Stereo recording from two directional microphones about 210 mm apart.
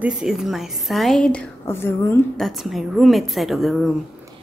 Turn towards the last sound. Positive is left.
turn(degrees=0)  # may be behind; listen again after turning